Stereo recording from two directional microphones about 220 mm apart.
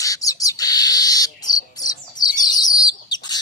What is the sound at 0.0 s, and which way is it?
Bird, 15° left (ahead or behind).